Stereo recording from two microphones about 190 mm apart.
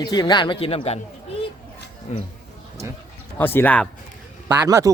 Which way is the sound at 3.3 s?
10° left (ahead or behind).